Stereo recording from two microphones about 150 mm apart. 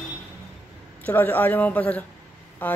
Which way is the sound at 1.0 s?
10° left (ahead or behind).